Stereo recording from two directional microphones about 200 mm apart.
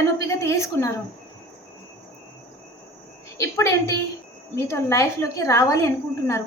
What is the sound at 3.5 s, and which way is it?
A woman's voice, 15° left (ahead or behind).